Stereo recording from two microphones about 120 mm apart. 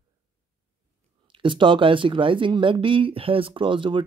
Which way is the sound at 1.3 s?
45° right (ahead or behind).